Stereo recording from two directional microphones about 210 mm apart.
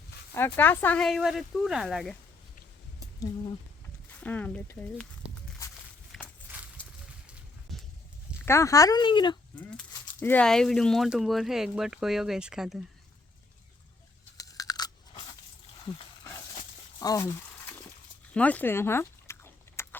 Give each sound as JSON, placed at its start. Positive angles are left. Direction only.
{"t": 0.3, "sound": "speech", "side_deg": 10}
{"t": 4.1, "sound": "speech", "side_deg": 10}
{"t": 6.1, "sound": "a sound", "side_deg": 5}
{"t": 8.4, "sound": "speech", "side_deg": 15}
{"t": 9.6, "sound": "speech", "side_deg": 5}
{"t": 14.3, "sound": "crunch", "side_deg": 15}
{"t": 17.0, "sound": "a sound", "side_deg": 15}
{"t": 18.3, "sound": "chewing", "side_deg": 5}